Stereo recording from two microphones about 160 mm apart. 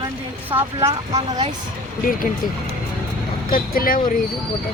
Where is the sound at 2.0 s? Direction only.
60° left (ahead or behind).